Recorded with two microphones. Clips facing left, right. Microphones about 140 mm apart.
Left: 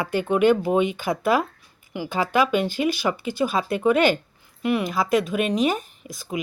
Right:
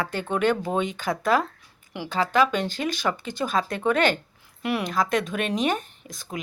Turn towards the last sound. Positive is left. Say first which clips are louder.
# left 5 dB
turn(degrees=5)  # may be behind; listen again after turning